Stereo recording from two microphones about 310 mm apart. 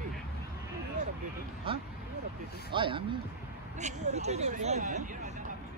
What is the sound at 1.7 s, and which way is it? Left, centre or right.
Speech, centre.